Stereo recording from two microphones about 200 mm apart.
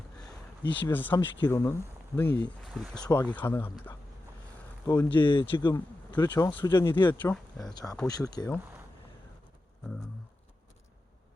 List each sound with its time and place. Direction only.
0.8 s speech: 10° left (ahead or behind)
4.9 s speech: 10° left (ahead or behind)
5.1 s speech: 25° left (ahead or behind)
7.2 s speech: 10° left (ahead or behind)
7.7 s speech: 20° left (ahead or behind)